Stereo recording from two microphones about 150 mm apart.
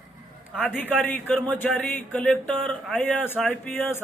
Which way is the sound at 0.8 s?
10° left (ahead or behind).